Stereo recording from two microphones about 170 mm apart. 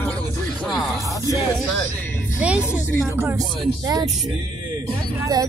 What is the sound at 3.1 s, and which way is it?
Speech, 15° right (ahead or behind).